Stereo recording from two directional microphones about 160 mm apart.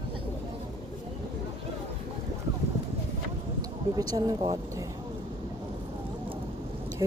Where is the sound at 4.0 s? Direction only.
20° right (ahead or behind).